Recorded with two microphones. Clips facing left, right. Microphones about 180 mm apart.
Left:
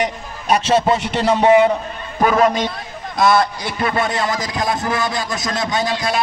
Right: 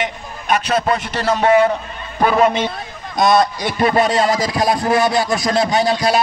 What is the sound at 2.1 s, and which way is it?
Speech, 5° right (ahead or behind).